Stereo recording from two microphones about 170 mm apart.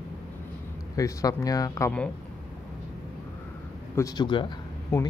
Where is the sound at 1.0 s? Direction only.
20° left (ahead or behind).